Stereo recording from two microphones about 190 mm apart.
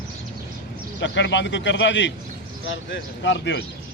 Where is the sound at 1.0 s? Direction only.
70° left (ahead or behind).